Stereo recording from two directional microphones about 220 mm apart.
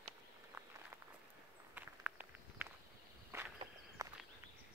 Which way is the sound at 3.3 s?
10° right (ahead or behind).